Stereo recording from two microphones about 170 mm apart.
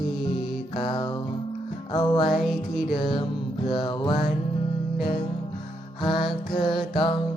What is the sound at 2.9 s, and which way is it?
Music, 30° left (ahead or behind).